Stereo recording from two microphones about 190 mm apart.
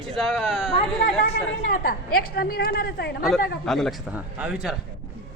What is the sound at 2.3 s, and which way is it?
Speech, 55° left (ahead or behind).